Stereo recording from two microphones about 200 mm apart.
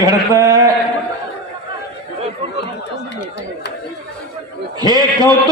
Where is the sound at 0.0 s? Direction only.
15° right (ahead or behind).